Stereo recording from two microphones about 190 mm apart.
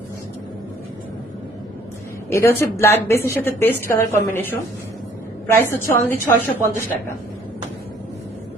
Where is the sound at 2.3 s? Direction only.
15° left (ahead or behind).